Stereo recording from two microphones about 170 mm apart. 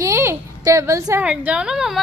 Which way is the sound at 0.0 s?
15° right (ahead or behind).